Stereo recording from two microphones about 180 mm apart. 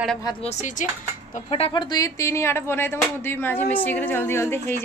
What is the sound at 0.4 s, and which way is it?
Speech, 40° left (ahead or behind).